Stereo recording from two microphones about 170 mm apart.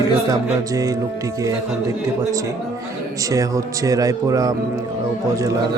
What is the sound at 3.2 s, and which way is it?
A man's voice, 20° right (ahead or behind).